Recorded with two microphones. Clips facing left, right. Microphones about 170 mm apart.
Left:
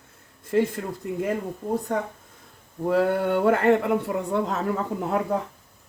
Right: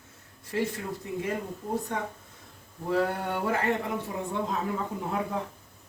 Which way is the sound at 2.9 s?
65° left (ahead or behind).